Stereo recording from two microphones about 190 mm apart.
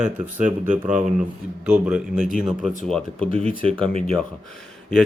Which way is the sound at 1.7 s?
5° right (ahead or behind).